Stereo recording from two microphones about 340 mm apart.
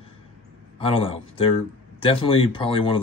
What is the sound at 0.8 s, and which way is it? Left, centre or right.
Speech, centre.